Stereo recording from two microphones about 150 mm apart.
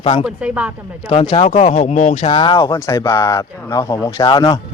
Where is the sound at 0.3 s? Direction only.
10° right (ahead or behind).